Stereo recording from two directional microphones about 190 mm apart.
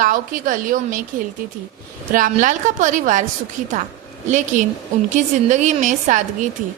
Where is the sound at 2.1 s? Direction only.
45° right (ahead or behind).